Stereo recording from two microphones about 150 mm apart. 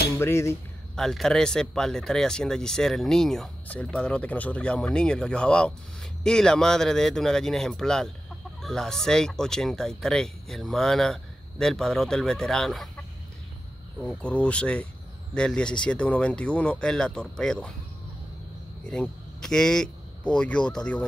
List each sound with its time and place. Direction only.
0.2 s speech: 20° left (ahead or behind)
0.9 s speech: 5° left (ahead or behind)
14.0 s speech: 10° left (ahead or behind)
18.9 s speech: 5° left (ahead or behind)